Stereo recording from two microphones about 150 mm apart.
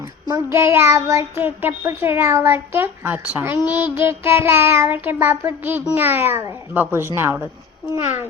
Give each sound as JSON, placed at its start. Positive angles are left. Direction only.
{"t": 0.3, "sound": "speech", "side_deg": -20}